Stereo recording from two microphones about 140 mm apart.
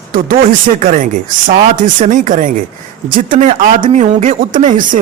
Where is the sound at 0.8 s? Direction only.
70° right (ahead or behind).